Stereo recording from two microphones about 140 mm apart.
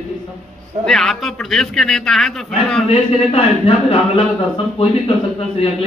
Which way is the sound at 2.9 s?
40° left (ahead or behind).